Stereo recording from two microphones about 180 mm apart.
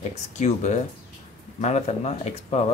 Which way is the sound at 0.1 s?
40° left (ahead or behind).